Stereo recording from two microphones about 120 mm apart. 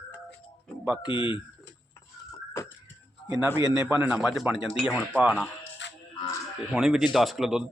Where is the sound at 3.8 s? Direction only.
15° right (ahead or behind).